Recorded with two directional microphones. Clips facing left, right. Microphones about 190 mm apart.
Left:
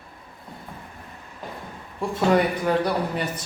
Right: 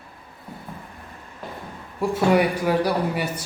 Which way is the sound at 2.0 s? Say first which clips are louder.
Right 1 dB; 10° right (ahead or behind).